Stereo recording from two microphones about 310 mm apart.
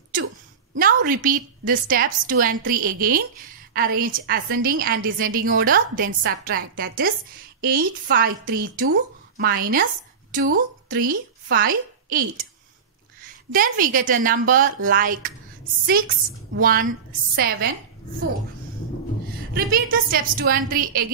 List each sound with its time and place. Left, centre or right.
0.7 s a woman's voice: right
16.5 s a woman's voice: right
19.5 s a woman's voice: right